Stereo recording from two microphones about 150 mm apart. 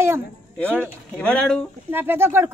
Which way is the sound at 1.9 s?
15° right (ahead or behind).